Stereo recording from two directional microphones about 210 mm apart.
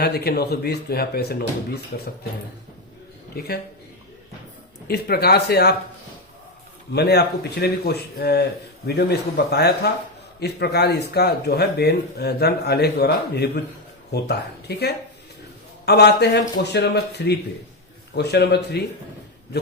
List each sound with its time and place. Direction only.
0.0 s speech: 50° left (ahead or behind)
3.3 s speech: 45° left (ahead or behind)
4.9 s speech: 50° left (ahead or behind)
6.9 s speech: 50° left (ahead or behind)